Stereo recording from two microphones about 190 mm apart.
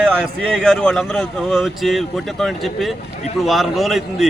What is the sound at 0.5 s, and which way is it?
A man's voice, 5° left (ahead or behind).